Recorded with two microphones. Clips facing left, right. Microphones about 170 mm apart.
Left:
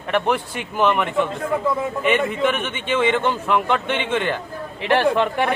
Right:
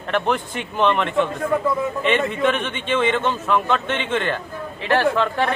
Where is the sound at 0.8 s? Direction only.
5° left (ahead or behind).